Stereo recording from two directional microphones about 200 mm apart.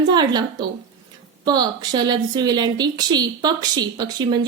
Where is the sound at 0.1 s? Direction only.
20° right (ahead or behind).